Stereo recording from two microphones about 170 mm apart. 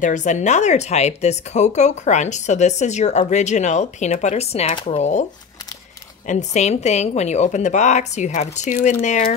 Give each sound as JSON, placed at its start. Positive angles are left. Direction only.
{"t": 0.0, "sound": "speech", "side_deg": 45}
{"t": 6.2, "sound": "speech", "side_deg": 45}